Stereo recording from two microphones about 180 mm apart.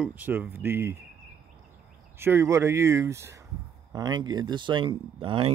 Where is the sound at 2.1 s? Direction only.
15° right (ahead or behind).